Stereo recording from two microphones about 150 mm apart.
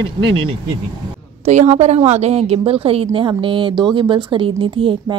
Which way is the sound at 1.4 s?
50° right (ahead or behind).